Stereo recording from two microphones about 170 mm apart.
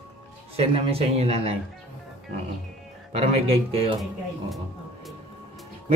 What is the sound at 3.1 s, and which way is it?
Speech, 35° right (ahead or behind).